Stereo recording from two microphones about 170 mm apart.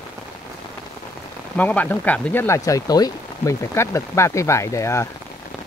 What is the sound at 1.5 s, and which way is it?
Speech, 10° left (ahead or behind).